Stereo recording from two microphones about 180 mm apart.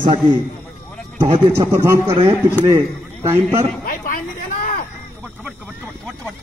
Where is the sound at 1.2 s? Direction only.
35° right (ahead or behind).